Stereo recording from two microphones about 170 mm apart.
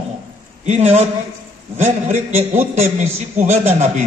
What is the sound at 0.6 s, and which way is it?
A man's voice, 40° right (ahead or behind).